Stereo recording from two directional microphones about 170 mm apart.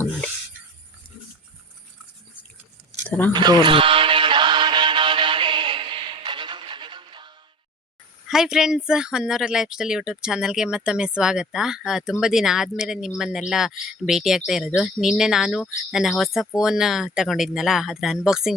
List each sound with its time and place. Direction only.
3.3 s music: 25° right (ahead or behind)
8.3 s speech: 5° right (ahead or behind)